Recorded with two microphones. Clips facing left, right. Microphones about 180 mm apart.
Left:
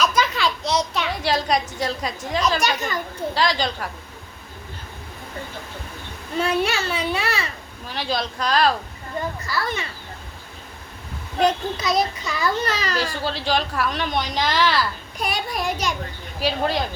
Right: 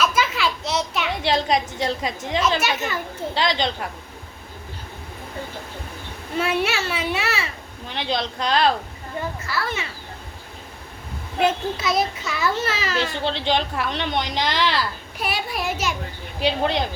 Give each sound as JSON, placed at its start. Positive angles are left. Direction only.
{"t": 0.0, "sound": "a sound", "side_deg": -5}
{"t": 1.2, "sound": "a woman's voice", "side_deg": -25}
{"t": 2.6, "sound": "a child's voice", "side_deg": -5}
{"t": 3.3, "sound": "speech", "side_deg": -25}
{"t": 6.3, "sound": "a child's voice", "side_deg": -5}
{"t": 7.9, "sound": "speech", "side_deg": -20}
{"t": 9.5, "sound": "a child's voice", "side_deg": 0}
{"t": 11.3, "sound": "a child's voice", "side_deg": -5}
{"t": 13.0, "sound": "speech", "side_deg": -20}
{"t": 15.2, "sound": "a child's voice", "side_deg": -5}
{"t": 16.4, "sound": "speech", "side_deg": -20}